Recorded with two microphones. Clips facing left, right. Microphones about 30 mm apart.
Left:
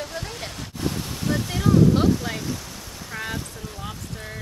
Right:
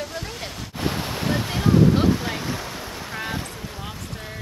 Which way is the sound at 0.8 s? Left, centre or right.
Right.